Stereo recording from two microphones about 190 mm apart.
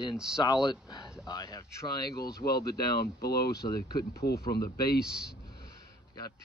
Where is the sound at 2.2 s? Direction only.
55° left (ahead or behind).